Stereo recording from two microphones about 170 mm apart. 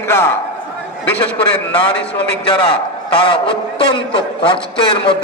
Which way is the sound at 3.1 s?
30° left (ahead or behind).